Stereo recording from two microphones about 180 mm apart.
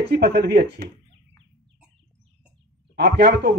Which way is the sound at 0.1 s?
65° right (ahead or behind).